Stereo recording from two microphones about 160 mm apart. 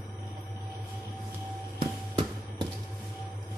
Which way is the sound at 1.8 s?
30° right (ahead or behind).